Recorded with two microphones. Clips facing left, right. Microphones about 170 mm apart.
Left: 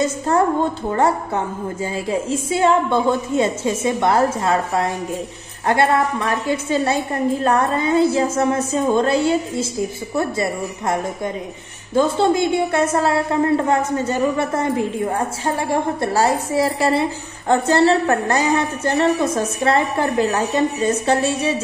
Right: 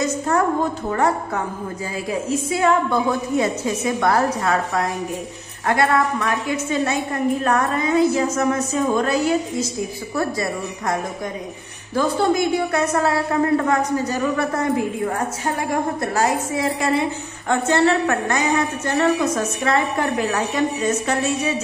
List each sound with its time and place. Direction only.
0.9 s a woman's voice: 30° left (ahead or behind)